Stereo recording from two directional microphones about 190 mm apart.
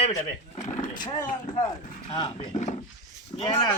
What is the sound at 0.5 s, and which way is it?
Vehicle, 40° left (ahead or behind).